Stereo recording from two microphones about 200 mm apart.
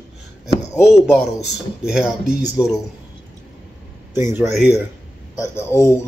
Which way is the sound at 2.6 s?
20° left (ahead or behind).